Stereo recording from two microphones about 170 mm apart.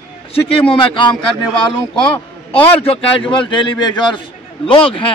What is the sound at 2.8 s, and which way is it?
A man's voice, 30° left (ahead or behind).